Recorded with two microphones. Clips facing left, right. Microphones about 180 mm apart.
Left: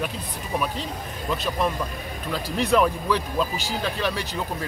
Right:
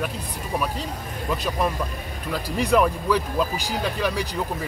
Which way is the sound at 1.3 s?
10° right (ahead or behind).